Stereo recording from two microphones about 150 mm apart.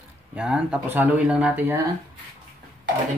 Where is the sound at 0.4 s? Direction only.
5° right (ahead or behind).